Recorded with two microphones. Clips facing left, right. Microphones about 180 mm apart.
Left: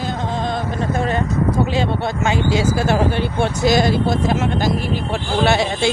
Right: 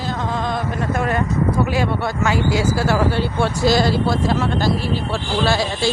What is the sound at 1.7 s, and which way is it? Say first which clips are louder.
Speech: left 1 dB; 25° left (ahead or behind).